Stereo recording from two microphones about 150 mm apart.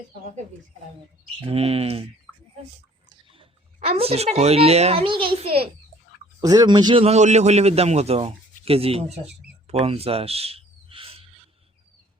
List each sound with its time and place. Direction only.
1.5 s a child's voice: 40° right (ahead or behind)
3.8 s a child's voice: 40° right (ahead or behind)
6.4 s speech: 25° right (ahead or behind)
7.0 s speech: 50° right (ahead or behind)